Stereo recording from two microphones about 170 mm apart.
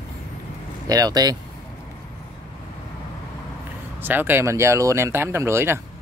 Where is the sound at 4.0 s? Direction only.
10° right (ahead or behind).